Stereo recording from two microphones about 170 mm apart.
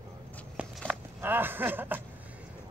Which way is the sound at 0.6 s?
10° right (ahead or behind).